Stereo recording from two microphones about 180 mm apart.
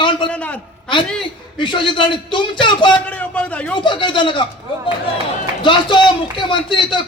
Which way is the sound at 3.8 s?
25° left (ahead or behind).